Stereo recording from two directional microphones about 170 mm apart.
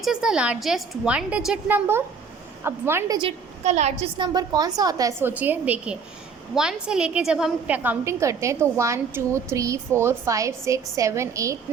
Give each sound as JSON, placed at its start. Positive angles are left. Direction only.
{"t": 0.0, "sound": "a woman's voice", "side_deg": -5}
{"t": 3.2, "sound": "a woman's voice", "side_deg": -35}
{"t": 4.0, "sound": "a woman's voice", "side_deg": -25}
{"t": 5.3, "sound": "a woman's voice", "side_deg": -10}